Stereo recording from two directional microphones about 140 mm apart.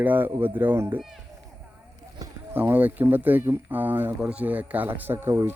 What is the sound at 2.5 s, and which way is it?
Speech, 15° right (ahead or behind).